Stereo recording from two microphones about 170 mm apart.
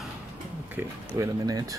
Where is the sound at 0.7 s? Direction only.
20° right (ahead or behind).